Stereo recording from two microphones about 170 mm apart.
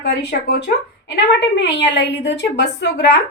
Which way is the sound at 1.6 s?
90° left.